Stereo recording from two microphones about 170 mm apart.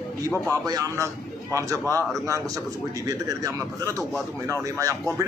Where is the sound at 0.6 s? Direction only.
20° right (ahead or behind).